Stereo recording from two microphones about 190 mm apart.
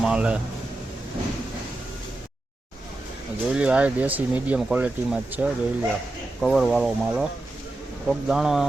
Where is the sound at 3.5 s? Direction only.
5° right (ahead or behind).